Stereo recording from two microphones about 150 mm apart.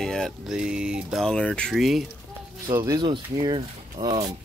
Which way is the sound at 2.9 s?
30° right (ahead or behind).